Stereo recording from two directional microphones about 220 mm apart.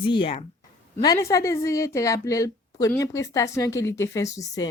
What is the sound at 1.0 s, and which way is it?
Speech, 15° left (ahead or behind).